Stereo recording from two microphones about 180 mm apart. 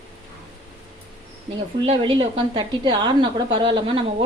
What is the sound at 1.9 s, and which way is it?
A woman's voice, 30° right (ahead or behind).